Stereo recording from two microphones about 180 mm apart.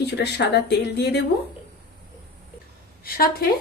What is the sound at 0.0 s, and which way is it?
Speech, 65° left (ahead or behind).